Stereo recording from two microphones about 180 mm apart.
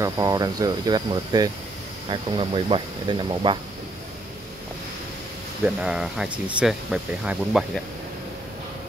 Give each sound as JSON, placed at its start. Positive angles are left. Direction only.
{"t": 0.0, "sound": "speech", "side_deg": -20}
{"t": 5.8, "sound": "speech", "side_deg": -5}